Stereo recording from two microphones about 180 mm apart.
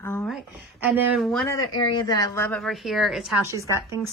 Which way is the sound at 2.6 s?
Centre (ahead or behind).